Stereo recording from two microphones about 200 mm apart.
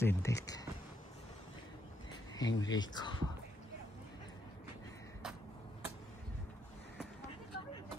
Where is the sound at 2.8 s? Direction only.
20° left (ahead or behind).